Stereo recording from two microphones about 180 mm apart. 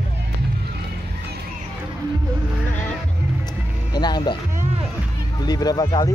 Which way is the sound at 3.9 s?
25° left (ahead or behind).